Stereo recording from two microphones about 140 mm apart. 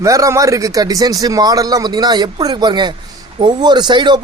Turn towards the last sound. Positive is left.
turn(degrees=-35)  # may be behind; listen again after turning